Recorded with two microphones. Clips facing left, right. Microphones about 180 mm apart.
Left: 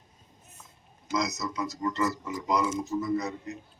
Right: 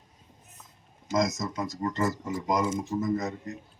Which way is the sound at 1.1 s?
50° right (ahead or behind).